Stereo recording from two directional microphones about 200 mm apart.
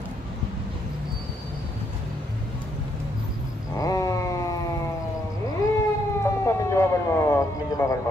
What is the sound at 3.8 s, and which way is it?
Cat, 15° left (ahead or behind).